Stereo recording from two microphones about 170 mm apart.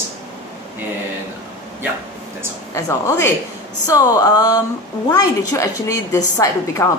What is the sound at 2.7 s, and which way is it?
A woman's voice, 15° left (ahead or behind).